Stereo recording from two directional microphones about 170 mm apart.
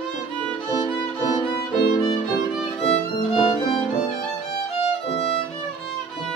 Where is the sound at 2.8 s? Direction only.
30° left (ahead or behind).